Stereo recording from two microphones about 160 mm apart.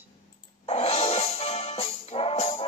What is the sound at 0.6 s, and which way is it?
Music, 40° left (ahead or behind).